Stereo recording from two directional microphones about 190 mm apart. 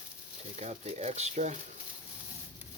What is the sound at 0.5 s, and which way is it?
Speech, 35° right (ahead or behind).